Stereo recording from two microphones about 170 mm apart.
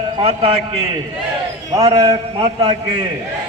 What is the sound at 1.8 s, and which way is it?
Speech, 25° right (ahead or behind).